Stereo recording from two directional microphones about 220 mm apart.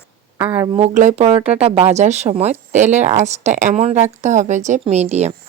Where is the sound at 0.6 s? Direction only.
25° right (ahead or behind).